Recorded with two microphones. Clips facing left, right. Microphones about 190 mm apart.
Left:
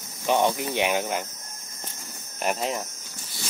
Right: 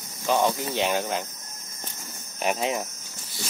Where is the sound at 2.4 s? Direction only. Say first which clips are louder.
Right 1 dB; centre (ahead or behind).